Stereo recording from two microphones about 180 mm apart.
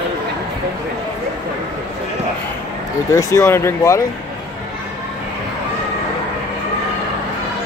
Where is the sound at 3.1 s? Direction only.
15° left (ahead or behind).